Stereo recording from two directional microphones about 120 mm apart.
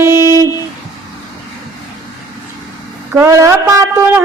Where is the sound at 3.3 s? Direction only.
25° right (ahead or behind).